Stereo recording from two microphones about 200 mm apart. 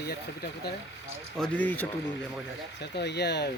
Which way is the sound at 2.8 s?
60° left (ahead or behind).